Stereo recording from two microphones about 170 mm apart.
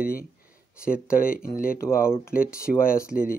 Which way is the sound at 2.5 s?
60° left (ahead or behind).